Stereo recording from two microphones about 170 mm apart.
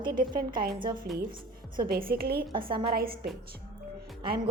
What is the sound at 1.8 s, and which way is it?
A woman's voice, 60° right (ahead or behind).